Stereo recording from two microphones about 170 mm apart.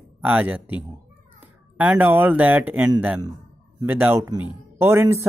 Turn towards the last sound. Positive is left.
turn(degrees=-15)  # may be behind; listen again after turning